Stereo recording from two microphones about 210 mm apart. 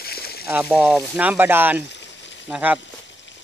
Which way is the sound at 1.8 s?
55° left (ahead or behind).